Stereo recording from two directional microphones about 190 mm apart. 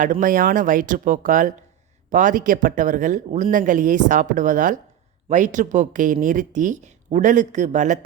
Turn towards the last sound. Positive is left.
turn(degrees=-40)  # may be behind; listen again after turning